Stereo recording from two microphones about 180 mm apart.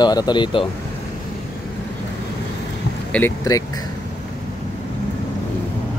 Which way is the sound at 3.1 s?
15° left (ahead or behind).